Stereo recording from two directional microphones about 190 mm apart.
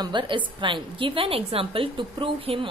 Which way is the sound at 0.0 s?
25° right (ahead or behind).